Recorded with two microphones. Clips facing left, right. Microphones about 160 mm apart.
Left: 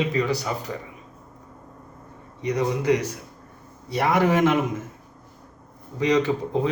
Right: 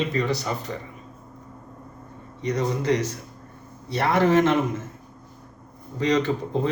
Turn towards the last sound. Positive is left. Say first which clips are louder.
# left 1 dB
turn(degrees=10)  # may be behind; listen again after turning